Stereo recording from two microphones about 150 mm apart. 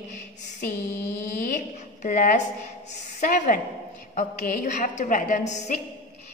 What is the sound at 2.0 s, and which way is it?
A woman's voice, 55° left (ahead or behind).